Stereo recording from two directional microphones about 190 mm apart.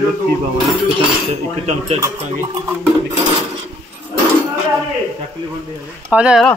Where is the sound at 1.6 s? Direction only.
35° right (ahead or behind).